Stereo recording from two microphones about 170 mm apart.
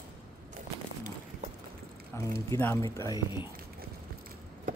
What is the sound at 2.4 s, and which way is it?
Speech, 15° left (ahead or behind).